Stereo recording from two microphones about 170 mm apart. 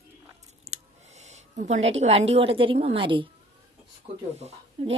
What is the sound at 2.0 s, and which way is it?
A woman's voice, 35° right (ahead or behind).